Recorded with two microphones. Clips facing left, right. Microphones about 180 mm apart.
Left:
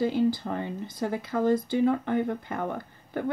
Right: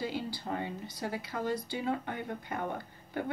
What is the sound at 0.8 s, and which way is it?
Speech, 50° left (ahead or behind).